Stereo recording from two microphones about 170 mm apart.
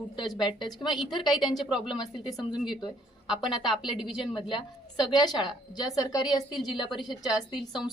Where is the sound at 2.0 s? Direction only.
25° left (ahead or behind).